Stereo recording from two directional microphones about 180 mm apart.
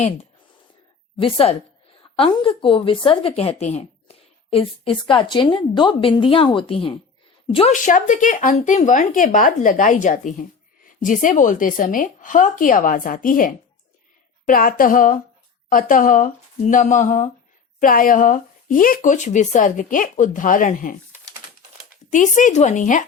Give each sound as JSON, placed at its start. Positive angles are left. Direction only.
{"t": 1.2, "sound": "a woman's voice", "side_deg": 30}
{"t": 7.7, "sound": "speech", "side_deg": 45}
{"t": 22.1, "sound": "speech", "side_deg": 45}